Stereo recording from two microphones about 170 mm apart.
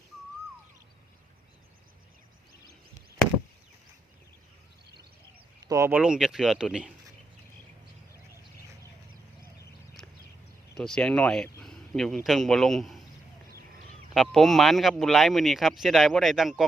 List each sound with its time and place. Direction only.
5.6 s speech: 15° right (ahead or behind)
6.0 s speech: 5° right (ahead or behind)
10.0 s a sound: 5° left (ahead or behind)
10.8 s a man's voice: 5° left (ahead or behind)
14.1 s speech: centre (ahead or behind)